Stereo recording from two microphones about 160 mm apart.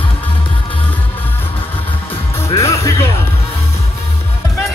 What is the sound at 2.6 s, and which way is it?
Music, 20° left (ahead or behind).